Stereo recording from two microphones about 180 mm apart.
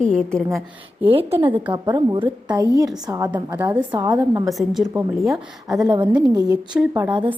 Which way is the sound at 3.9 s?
20° right (ahead or behind).